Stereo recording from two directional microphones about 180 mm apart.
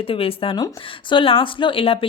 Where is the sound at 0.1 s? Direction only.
30° left (ahead or behind).